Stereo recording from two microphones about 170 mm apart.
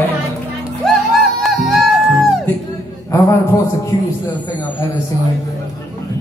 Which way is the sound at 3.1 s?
15° left (ahead or behind).